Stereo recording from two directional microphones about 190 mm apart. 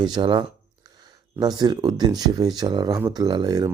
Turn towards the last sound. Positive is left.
turn(degrees=-20)  # may be behind; listen again after turning